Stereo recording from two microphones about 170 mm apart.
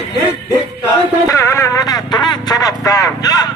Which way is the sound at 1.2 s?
15° left (ahead or behind).